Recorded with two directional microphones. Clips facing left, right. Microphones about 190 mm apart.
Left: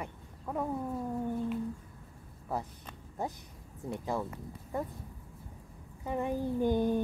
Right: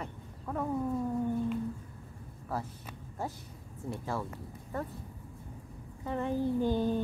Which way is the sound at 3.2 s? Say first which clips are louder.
Left 1 dB; 15° left (ahead or behind).